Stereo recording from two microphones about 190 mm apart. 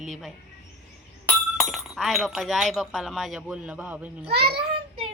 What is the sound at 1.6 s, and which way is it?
A woman's voice, centre (ahead or behind).